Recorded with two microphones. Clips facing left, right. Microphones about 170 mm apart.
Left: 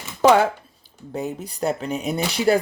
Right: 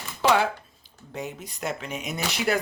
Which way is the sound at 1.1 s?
35° left (ahead or behind).